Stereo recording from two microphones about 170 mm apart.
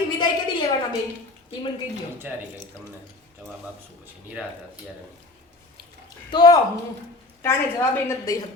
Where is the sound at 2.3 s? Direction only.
10° right (ahead or behind).